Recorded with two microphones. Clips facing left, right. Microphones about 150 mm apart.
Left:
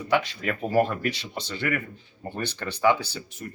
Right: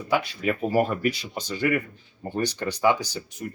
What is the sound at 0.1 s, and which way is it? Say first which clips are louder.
Speech: right 1 dB; 5° right (ahead or behind).